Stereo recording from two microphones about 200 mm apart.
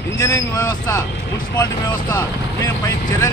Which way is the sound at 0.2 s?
15° left (ahead or behind).